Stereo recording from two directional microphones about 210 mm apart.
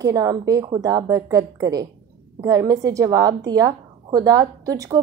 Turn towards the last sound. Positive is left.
turn(degrees=-15)  # may be behind; listen again after turning